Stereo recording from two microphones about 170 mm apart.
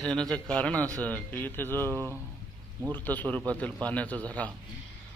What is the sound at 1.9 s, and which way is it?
Speech, 20° right (ahead or behind).